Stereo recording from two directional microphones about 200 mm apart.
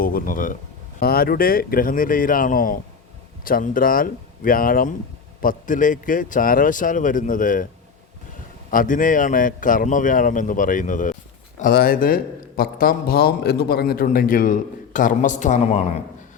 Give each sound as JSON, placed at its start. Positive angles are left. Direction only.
{"t": 0.0, "sound": "a man's voice", "side_deg": 45}
{"t": 8.7, "sound": "a man's voice", "side_deg": 40}